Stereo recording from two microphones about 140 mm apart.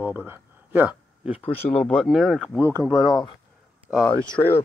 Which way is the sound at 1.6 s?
5° left (ahead or behind).